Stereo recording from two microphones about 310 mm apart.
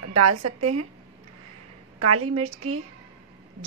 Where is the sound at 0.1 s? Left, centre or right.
Right.